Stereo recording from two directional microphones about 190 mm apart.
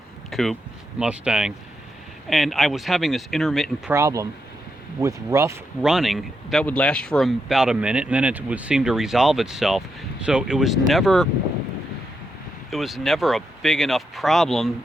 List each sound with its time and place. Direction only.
0.3 s speech: centre (ahead or behind)
3.9 s speech: 15° right (ahead or behind)
5.8 s speech: centre (ahead or behind)
12.7 s speech: centre (ahead or behind)